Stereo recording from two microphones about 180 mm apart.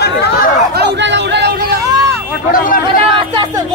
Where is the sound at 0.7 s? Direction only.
75° right (ahead or behind).